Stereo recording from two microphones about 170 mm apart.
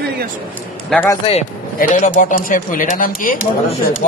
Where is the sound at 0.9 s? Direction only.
15° left (ahead or behind).